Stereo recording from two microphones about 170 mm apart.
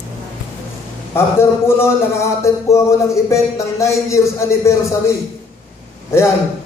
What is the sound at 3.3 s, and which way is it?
Speech, 15° left (ahead or behind).